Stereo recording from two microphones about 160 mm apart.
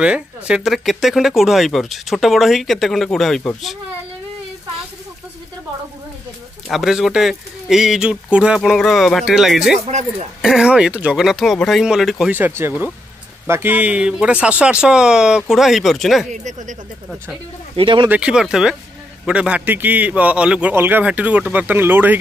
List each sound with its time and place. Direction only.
0.0 s speech: 5° right (ahead or behind)
6.7 s speech: centre (ahead or behind)
16.4 s speech: 50° right (ahead or behind)
17.7 s speech: 30° right (ahead or behind)
18.0 s a man's voice: 10° right (ahead or behind)